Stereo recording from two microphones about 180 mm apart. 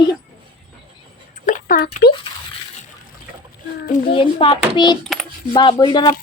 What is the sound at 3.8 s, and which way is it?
Speech, 60° left (ahead or behind).